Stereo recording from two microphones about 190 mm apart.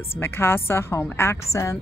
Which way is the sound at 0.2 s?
10° left (ahead or behind).